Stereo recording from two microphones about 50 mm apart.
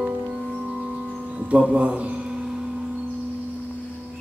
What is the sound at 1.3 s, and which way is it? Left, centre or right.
Music, right.